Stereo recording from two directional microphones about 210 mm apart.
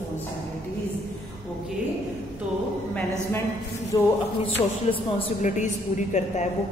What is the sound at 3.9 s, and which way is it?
A woman's voice, 20° left (ahead or behind).